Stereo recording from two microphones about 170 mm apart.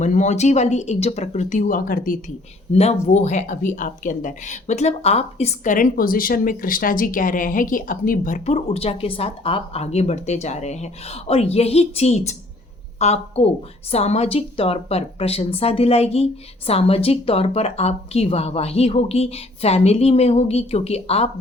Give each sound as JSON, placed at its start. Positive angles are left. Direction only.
{"t": 0.0, "sound": "speech", "side_deg": 45}
{"t": 2.7, "sound": "a woman's voice", "side_deg": 40}